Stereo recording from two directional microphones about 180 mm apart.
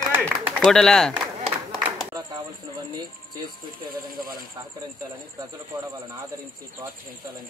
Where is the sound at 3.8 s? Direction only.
50° right (ahead or behind).